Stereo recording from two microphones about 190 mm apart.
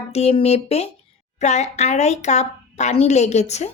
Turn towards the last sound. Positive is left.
turn(degrees=35)  # may be behind; listen again after turning